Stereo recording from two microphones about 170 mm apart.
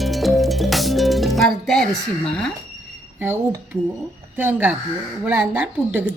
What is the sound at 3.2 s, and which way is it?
A woman's voice, 10° right (ahead or behind).